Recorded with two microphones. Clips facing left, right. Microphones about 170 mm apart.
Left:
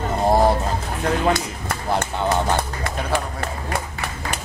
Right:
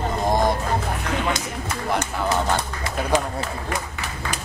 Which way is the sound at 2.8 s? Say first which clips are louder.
Right 2 dB; 55° left (ahead or behind).